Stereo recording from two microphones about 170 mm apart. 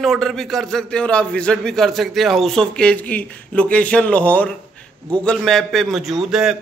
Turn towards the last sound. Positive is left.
turn(degrees=-5)  # may be behind; listen again after turning